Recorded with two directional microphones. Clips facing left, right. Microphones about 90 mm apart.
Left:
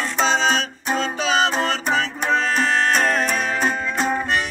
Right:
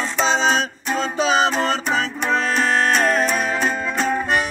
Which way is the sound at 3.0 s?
30° right (ahead or behind).